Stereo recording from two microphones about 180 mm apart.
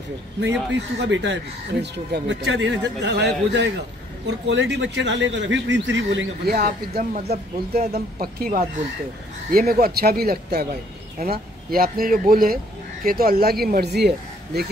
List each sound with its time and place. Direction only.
0.4 s speech: 80° right
6.5 s speech: 55° right (ahead or behind)